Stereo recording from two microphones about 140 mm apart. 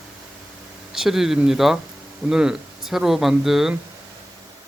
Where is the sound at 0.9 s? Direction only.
5° right (ahead or behind).